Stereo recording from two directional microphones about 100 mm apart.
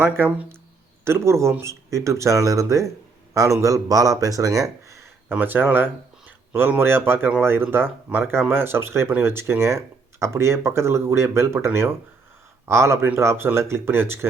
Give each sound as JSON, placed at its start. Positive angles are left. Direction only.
{"t": 0.0, "sound": "speech", "side_deg": -20}
{"t": 5.3, "sound": "speech", "side_deg": -20}